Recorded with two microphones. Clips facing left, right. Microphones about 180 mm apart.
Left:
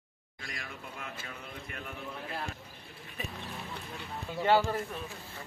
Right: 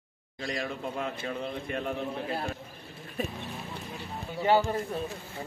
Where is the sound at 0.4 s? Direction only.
25° right (ahead or behind).